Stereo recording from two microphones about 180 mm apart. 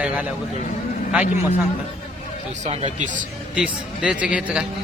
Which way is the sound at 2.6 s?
35° right (ahead or behind).